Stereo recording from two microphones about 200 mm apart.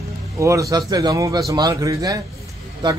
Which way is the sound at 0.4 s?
15° right (ahead or behind).